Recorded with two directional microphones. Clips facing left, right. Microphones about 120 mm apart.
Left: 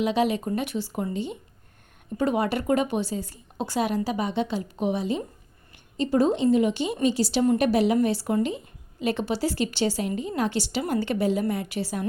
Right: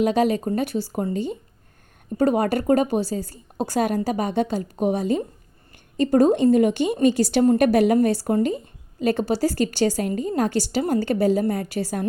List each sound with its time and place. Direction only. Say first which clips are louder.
0.0 s a woman's voice: right 4 dB; 45° right (ahead or behind)